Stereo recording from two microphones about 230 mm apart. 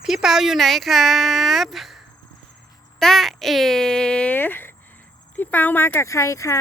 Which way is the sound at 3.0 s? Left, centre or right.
Centre.